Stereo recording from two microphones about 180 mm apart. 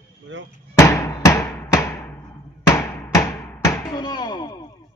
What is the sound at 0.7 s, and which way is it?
Hammer, 15° left (ahead or behind).